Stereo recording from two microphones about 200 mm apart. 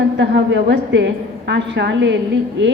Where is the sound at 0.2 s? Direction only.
60° right (ahead or behind).